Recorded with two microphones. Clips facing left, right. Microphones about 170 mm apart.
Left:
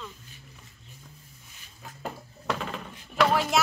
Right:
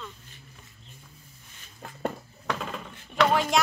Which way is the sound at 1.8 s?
55° right (ahead or behind).